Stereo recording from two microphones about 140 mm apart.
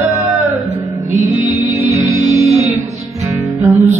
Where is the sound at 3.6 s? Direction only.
20° right (ahead or behind).